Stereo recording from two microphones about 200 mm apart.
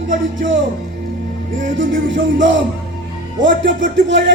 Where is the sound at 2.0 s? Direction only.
65° right (ahead or behind).